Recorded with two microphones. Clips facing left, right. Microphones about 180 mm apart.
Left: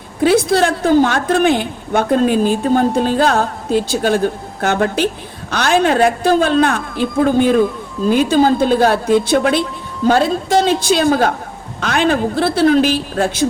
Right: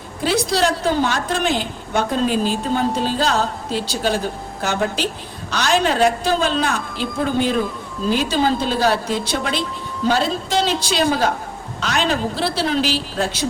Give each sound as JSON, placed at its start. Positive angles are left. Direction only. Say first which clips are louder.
{"t": 0.2, "sound": "a woman's voice", "louder": "left 6 dB", "side_deg": 55}